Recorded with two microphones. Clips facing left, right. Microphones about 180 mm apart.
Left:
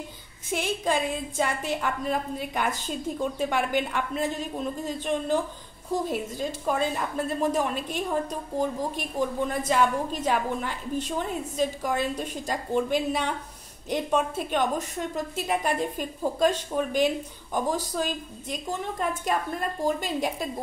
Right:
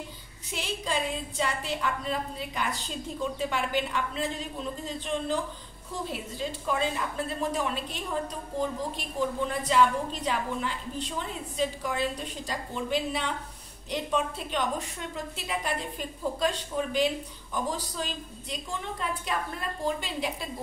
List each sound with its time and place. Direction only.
0.5 s a woman's voice: 50° left (ahead or behind)